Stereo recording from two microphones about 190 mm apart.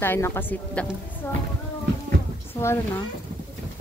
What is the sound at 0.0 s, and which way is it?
Speech, 15° left (ahead or behind).